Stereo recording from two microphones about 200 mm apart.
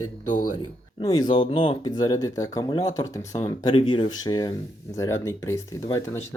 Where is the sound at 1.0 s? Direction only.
25° left (ahead or behind).